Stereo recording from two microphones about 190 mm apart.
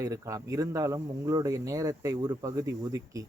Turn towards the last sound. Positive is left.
turn(degrees=-20)  # may be behind; listen again after turning